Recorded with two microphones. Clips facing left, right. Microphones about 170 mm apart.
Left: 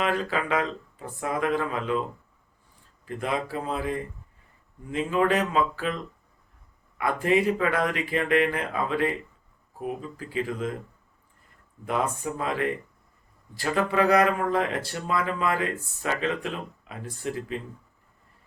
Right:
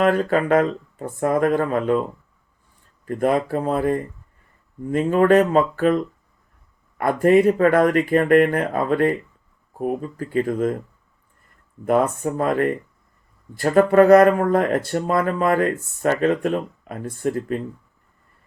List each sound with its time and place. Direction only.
0.0 s speech: 50° right (ahead or behind)
3.1 s speech: 50° right (ahead or behind)
7.0 s speech: 50° right (ahead or behind)
12.2 s speech: 50° right (ahead or behind)